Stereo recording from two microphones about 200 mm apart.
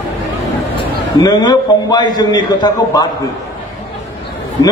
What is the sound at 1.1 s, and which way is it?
A man's voice, 20° left (ahead or behind).